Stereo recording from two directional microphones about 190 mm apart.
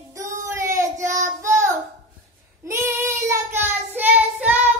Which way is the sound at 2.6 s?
15° right (ahead or behind).